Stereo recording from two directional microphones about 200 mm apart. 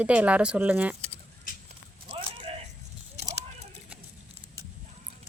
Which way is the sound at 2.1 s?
25° right (ahead or behind).